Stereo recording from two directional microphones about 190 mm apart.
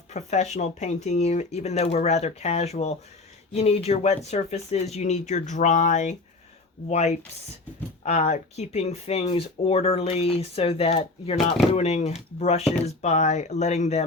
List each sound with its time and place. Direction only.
0.1 s speech: 35° left (ahead or behind)